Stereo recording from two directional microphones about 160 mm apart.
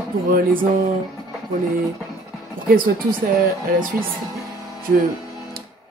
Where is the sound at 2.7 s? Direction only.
60° right (ahead or behind).